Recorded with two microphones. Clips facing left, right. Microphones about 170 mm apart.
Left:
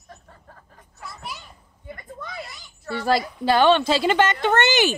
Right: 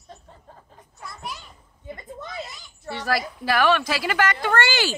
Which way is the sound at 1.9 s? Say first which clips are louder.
Right 1 dB; 20° right (ahead or behind).